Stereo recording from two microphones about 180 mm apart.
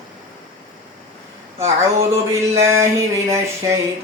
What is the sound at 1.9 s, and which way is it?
Mantra, 15° right (ahead or behind).